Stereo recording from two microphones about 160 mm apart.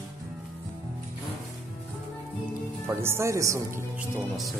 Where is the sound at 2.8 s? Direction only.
15° right (ahead or behind).